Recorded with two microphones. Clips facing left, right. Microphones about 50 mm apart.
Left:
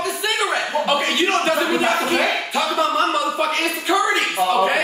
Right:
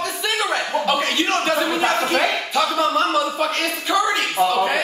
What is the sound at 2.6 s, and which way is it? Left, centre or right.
Speech, centre.